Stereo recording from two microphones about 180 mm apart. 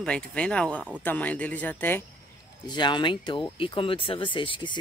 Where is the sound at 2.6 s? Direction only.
25° left (ahead or behind).